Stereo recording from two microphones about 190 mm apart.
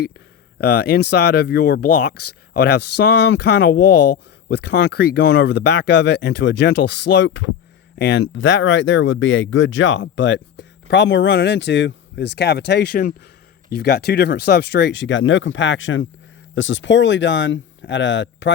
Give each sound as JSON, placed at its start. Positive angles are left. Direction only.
{"t": 0.6, "sound": "speech", "side_deg": 55}
{"t": 16.6, "sound": "speech", "side_deg": 75}